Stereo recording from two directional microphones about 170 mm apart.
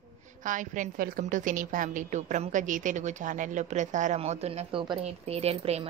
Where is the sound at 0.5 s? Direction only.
50° right (ahead or behind).